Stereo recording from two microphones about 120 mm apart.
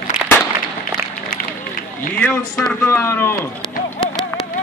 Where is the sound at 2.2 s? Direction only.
10° left (ahead or behind).